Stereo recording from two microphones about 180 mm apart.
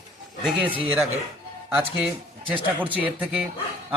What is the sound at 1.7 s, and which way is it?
A man's voice, 10° right (ahead or behind).